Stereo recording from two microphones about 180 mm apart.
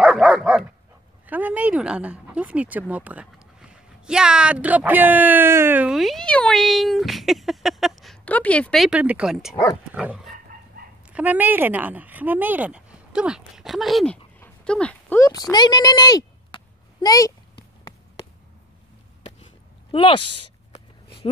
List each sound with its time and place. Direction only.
0.0 s dog: 5° right (ahead or behind)
1.2 s speech: 10° right (ahead or behind)
9.9 s dog: 5° right (ahead or behind)
11.1 s speech: 10° right (ahead or behind); by 15.4 s 15° left (ahead or behind)
15.5 s a sound: 20° left (ahead or behind)
19.9 s speech: 30° left (ahead or behind)
20.7 s a sound: 30° left (ahead or behind)